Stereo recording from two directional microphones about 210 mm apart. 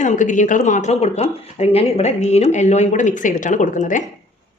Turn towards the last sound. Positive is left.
turn(degrees=35)  # may be behind; listen again after turning